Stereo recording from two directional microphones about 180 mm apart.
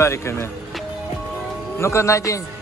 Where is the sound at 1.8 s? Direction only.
15° left (ahead or behind).